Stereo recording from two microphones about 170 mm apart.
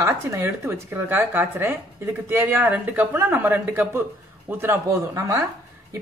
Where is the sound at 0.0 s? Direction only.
15° right (ahead or behind).